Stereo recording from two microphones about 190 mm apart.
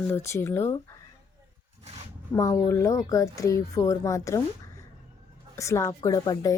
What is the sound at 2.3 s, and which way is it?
A woman's voice, 15° left (ahead or behind).